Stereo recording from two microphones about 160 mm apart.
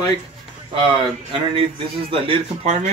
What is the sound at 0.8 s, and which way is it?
Speech, 30° right (ahead or behind).